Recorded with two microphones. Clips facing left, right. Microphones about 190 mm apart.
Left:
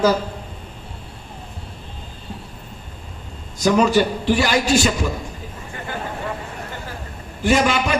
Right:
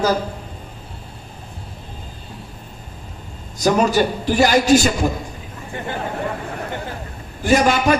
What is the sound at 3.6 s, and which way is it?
A man's voice, 40° right (ahead or behind).